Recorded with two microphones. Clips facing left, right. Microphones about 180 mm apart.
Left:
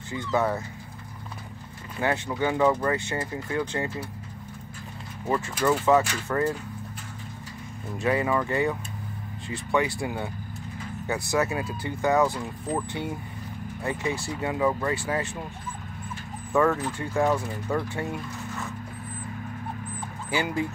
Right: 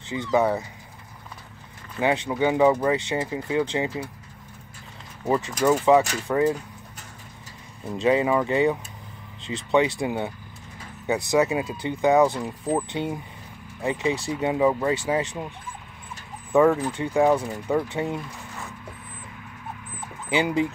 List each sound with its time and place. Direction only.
0.1 s speech: 15° right (ahead or behind)
2.0 s speech: 15° right (ahead or behind)
5.2 s speech: 20° right (ahead or behind)
7.9 s speech: 20° right (ahead or behind)
16.5 s speech: 15° right (ahead or behind)
20.2 s speech: 20° right (ahead or behind)